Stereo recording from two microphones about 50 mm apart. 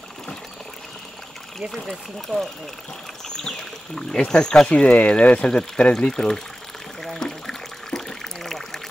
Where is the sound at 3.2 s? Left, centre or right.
Centre.